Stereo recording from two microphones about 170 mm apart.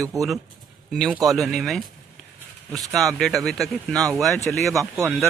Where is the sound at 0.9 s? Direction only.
Centre (ahead or behind).